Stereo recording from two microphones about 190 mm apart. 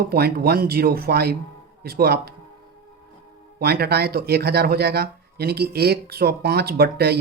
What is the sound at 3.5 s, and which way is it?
Speech, 55° right (ahead or behind).